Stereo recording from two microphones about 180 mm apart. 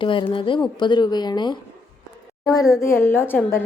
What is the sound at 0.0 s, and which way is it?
A woman's voice, 25° left (ahead or behind).